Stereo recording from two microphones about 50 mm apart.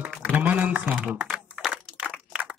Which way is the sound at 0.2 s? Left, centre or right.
Right.